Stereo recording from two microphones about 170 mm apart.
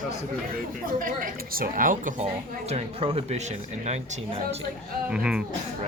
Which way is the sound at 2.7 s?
35° right (ahead or behind).